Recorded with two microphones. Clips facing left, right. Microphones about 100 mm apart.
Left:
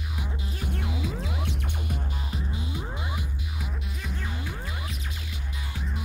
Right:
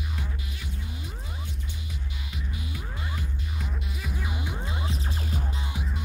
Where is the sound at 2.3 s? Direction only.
25° left (ahead or behind).